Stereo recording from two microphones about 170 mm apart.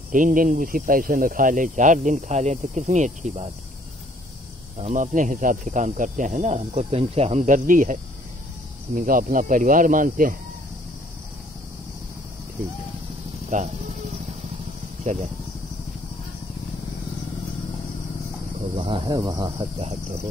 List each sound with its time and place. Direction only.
0.1 s speech: 55° right (ahead or behind)
4.7 s speech: 45° right (ahead or behind)
13.5 s speech: 45° right (ahead or behind)
15.0 s speech: 50° right (ahead or behind)
18.8 s speech: 30° right (ahead or behind)